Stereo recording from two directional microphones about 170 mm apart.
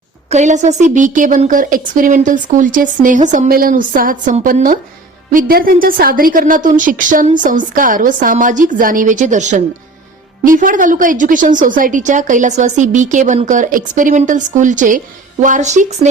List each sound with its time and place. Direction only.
0.3 s a woman's voice: 45° right (ahead or behind)